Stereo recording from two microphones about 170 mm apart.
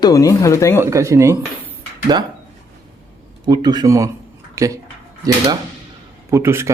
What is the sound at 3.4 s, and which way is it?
A man's voice, 25° right (ahead or behind).